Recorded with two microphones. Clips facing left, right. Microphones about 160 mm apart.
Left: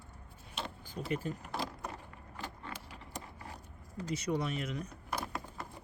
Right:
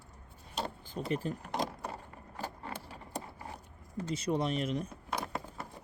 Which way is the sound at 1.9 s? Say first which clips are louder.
Right 3 dB; 35° right (ahead or behind).